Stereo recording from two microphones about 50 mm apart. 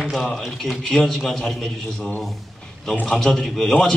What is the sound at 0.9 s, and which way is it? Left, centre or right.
Speech, centre.